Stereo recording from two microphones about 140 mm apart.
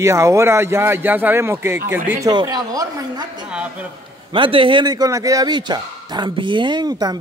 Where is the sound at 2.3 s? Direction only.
25° right (ahead or behind).